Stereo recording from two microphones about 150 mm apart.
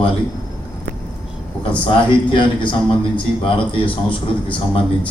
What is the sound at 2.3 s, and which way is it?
A man's voice, 30° left (ahead or behind).